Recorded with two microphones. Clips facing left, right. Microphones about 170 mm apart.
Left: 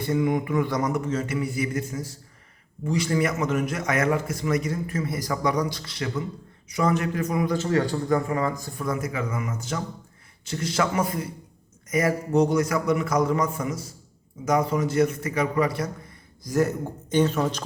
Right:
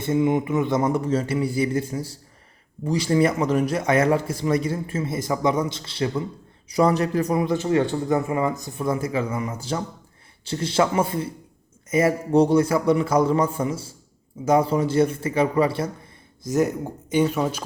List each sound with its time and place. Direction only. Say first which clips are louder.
0.0 s a man's voice: right 3 dB; 25° right (ahead or behind)